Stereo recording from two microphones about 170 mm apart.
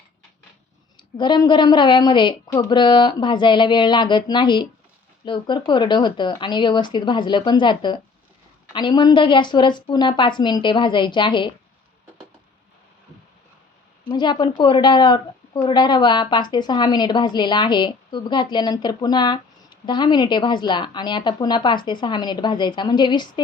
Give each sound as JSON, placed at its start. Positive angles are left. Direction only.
{"t": 0.9, "sound": "a woman's voice", "side_deg": 25}
{"t": 14.1, "sound": "a woman's voice", "side_deg": 25}